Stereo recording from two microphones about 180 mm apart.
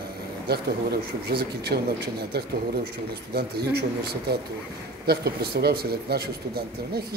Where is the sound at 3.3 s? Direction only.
65° right (ahead or behind).